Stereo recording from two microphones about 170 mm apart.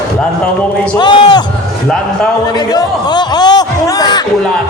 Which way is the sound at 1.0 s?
25° left (ahead or behind).